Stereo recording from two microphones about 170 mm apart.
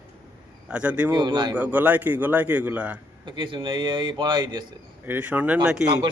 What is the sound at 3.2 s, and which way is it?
A man's voice, 30° right (ahead or behind).